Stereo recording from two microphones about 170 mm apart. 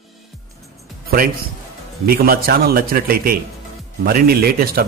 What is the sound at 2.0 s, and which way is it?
Speech, 60° right (ahead or behind).